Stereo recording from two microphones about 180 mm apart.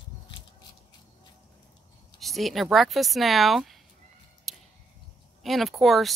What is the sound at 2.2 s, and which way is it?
Speech, centre (ahead or behind).